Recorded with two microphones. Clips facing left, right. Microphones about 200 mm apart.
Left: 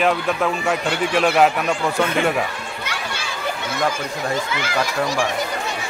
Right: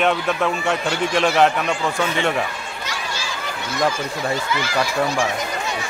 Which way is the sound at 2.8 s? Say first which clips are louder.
Even; 60° left (ahead or behind).